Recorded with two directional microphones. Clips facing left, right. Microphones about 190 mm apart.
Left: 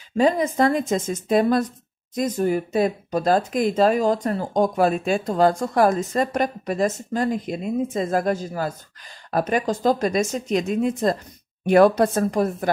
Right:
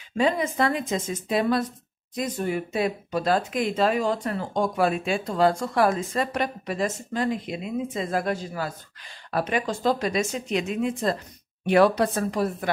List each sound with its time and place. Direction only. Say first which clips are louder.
0.2 s speech: left 4 dB; 40° left (ahead or behind)